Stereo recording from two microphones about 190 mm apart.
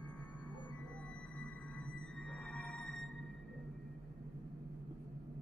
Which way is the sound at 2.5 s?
5° left (ahead or behind).